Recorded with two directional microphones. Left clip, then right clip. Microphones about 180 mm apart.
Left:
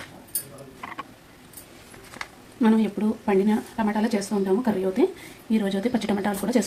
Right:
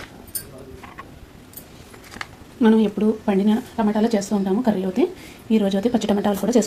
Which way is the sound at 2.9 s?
30° right (ahead or behind).